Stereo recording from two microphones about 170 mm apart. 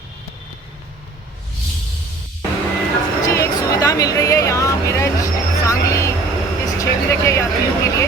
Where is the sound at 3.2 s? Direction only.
20° left (ahead or behind).